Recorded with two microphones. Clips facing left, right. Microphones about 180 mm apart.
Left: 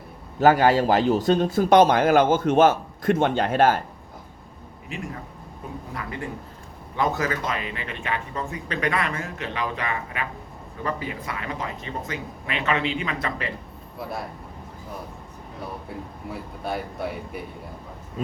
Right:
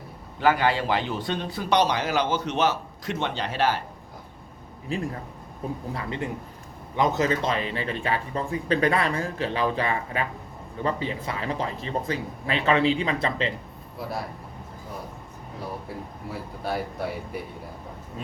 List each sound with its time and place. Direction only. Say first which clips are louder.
0.3 s speech: left 5 dB; 45° left (ahead or behind)
4.9 s speech: right 4 dB; 35° right (ahead or behind)
15.9 s speech: left 1 dB; centre (ahead or behind)